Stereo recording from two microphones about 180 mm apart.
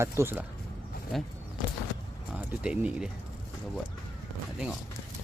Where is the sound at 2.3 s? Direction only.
5° right (ahead or behind).